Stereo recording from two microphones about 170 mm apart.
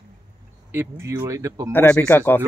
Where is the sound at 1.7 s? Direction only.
10° left (ahead or behind).